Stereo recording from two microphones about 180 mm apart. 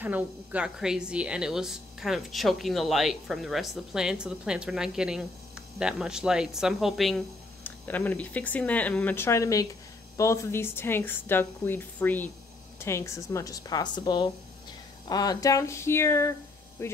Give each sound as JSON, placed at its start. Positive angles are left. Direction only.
{"t": 0.0, "sound": "a woman's voice", "side_deg": -10}